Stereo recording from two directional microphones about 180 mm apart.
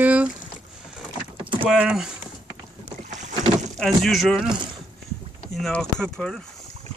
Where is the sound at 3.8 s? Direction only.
Centre (ahead or behind).